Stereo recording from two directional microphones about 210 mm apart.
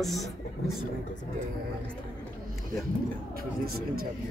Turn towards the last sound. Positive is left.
turn(degrees=-45)  # may be behind; listen again after turning